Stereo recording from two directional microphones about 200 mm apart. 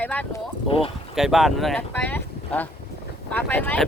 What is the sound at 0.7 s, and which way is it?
Speech, 30° left (ahead or behind).